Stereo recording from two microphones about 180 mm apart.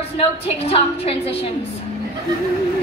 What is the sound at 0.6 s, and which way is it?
Speech, 35° left (ahead or behind).